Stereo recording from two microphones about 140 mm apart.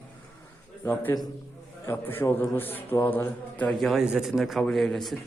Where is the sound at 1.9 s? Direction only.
15° left (ahead or behind).